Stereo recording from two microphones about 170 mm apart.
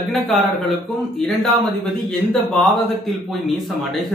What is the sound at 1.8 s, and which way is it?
Speech, 5° left (ahead or behind).